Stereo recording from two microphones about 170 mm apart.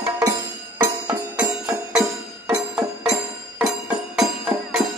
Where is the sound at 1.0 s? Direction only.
20° right (ahead or behind).